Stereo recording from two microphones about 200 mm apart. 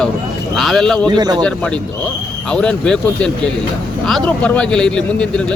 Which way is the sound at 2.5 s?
5° left (ahead or behind).